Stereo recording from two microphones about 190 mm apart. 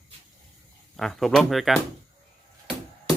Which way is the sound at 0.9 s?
Centre (ahead or behind).